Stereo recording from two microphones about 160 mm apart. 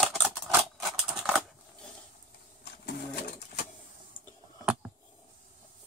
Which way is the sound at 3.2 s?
85° left.